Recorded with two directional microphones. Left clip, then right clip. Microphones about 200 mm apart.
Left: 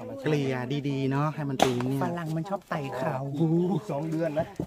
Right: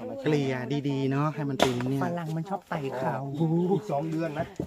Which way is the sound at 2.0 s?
55° left (ahead or behind).